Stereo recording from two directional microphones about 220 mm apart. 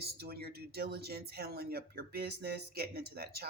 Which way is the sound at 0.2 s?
45° right (ahead or behind).